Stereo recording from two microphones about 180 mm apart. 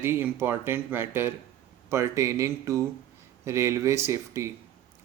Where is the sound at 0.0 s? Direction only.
15° right (ahead or behind).